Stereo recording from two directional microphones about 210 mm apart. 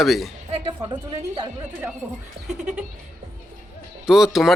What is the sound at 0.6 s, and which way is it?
Speech, 20° right (ahead or behind).